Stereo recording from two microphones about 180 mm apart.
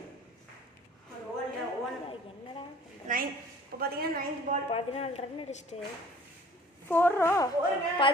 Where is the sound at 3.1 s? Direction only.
45° right (ahead or behind).